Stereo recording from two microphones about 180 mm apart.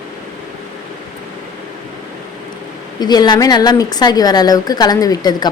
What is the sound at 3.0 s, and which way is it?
A woman's voice, 25° left (ahead or behind).